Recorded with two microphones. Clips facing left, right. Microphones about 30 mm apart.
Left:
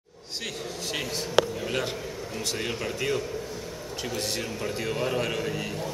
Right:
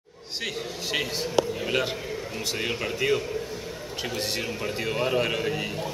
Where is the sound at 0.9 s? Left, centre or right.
Centre.